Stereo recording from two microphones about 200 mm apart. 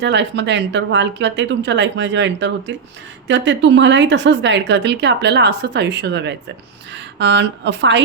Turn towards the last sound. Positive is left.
turn(degrees=-65)  # may be behind; listen again after turning